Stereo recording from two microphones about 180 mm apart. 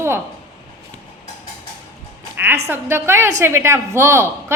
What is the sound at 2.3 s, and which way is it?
A woman's voice, 10° right (ahead or behind).